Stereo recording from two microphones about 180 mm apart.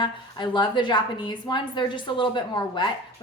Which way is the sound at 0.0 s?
25° left (ahead or behind).